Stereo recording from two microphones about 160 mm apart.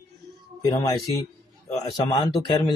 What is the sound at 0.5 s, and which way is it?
Speech, 20° left (ahead or behind).